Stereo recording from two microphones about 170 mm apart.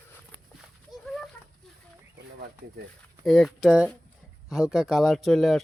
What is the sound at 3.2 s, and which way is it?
Speech, centre (ahead or behind).